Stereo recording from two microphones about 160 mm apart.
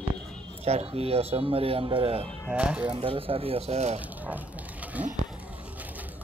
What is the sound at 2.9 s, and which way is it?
Speech, 35° right (ahead or behind).